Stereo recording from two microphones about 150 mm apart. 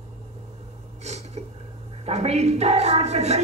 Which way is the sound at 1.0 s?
45° right (ahead or behind).